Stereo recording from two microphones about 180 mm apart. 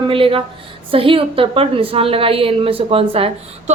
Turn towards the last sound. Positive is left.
turn(degrees=-30)  # may be behind; listen again after turning